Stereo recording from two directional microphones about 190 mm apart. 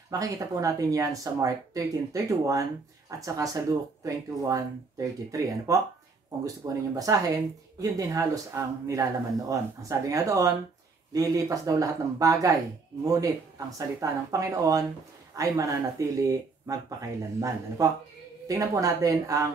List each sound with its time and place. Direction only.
0.1 s speech: 15° right (ahead or behind)